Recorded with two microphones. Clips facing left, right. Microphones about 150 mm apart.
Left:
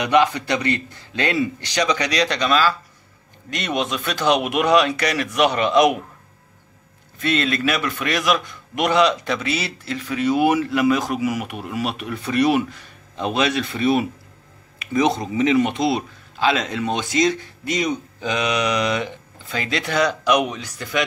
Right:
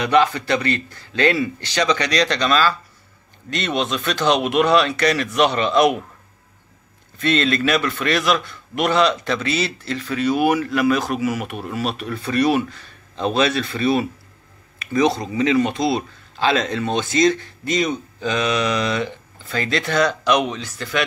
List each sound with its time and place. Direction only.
0.0 s a man's voice: 15° left (ahead or behind)
7.2 s a man's voice: 10° left (ahead or behind)
16.3 s a man's voice: 10° left (ahead or behind)